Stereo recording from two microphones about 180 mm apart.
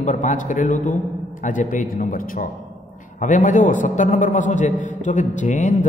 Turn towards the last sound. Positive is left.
turn(degrees=40)  # may be behind; listen again after turning